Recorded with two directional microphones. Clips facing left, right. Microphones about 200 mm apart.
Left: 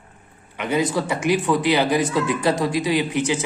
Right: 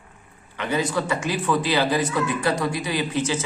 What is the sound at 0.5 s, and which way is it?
A man's voice, 20° left (ahead or behind).